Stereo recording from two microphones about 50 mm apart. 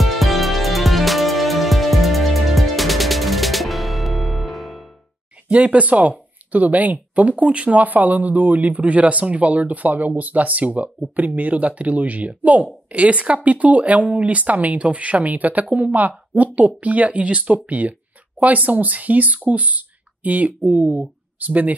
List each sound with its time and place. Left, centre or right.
0.0 s music: centre
5.5 s speech: right